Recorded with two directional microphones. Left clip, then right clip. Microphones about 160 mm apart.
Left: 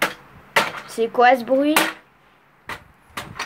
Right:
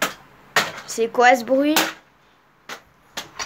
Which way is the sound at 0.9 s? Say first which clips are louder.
Even; 5° right (ahead or behind).